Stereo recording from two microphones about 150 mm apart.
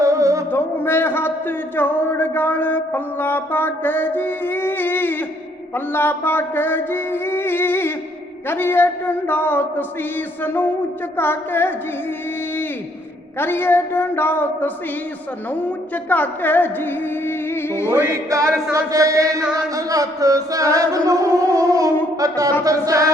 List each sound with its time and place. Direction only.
0.0 s music: 20° right (ahead or behind)
0.5 s a man's voice: 15° left (ahead or behind)
13.4 s a man's voice: 15° left (ahead or behind)
16.0 s music: 10° left (ahead or behind)
18.0 s chant: 20° right (ahead or behind)
19.5 s music: 25° right (ahead or behind)
22.2 s chant: 25° right (ahead or behind)